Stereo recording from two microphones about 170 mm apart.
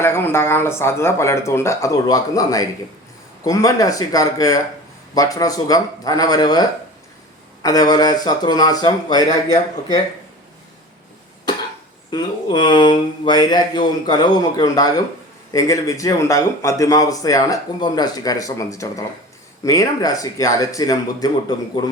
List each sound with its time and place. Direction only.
0.0 s speech: 15° left (ahead or behind)
12.1 s speech: 25° left (ahead or behind)